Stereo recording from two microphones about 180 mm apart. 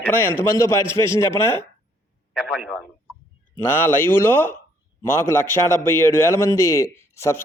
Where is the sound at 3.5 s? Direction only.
10° left (ahead or behind).